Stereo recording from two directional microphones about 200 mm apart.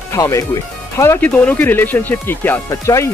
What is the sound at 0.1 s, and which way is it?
Speech, 15° left (ahead or behind).